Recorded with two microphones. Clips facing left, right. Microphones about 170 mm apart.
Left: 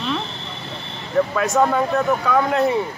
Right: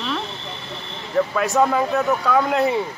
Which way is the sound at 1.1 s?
Centre (ahead or behind).